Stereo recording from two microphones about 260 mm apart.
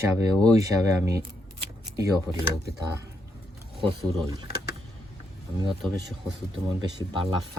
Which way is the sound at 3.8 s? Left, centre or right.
Centre.